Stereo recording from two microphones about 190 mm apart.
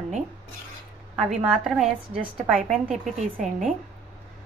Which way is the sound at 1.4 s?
Centre (ahead or behind).